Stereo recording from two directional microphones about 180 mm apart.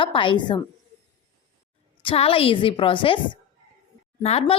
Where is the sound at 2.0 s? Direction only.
30° left (ahead or behind).